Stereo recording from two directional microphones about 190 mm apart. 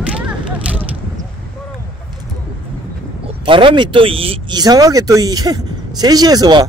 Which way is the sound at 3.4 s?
25° right (ahead or behind).